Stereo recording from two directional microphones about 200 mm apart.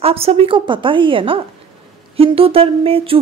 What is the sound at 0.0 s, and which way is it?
Speech, 30° right (ahead or behind).